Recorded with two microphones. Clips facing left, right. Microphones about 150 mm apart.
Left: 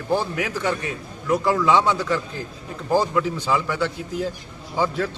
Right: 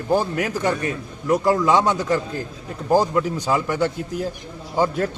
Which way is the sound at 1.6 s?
45° right (ahead or behind).